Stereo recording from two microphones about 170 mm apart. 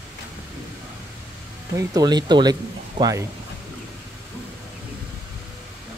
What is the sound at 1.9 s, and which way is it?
Speech, 25° right (ahead or behind).